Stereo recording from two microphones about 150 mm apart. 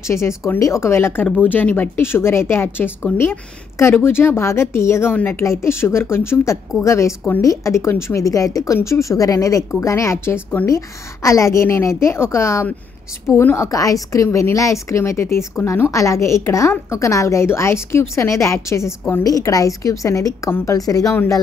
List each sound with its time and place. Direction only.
0.0 s a woman's voice: 20° left (ahead or behind)